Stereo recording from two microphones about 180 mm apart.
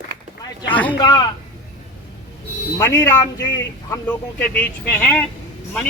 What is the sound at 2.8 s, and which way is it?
A man's voice, 15° left (ahead or behind).